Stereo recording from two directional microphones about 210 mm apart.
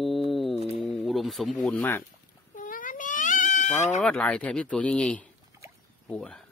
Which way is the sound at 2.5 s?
40° left (ahead or behind).